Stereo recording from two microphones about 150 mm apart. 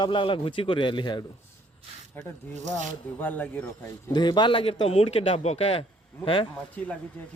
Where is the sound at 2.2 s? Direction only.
15° left (ahead or behind).